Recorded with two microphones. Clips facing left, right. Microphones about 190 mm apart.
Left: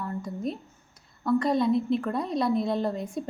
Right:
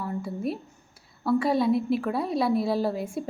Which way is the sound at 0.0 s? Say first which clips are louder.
Right 2 dB; 5° right (ahead or behind).